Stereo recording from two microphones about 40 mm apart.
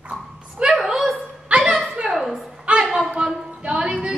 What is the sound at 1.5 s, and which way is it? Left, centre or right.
Music, right.